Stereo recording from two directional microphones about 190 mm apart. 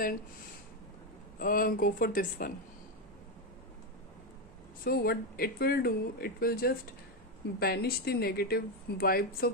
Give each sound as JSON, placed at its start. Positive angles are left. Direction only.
{"t": 1.4, "sound": "speech", "side_deg": 50}
{"t": 4.8, "sound": "speech", "side_deg": 55}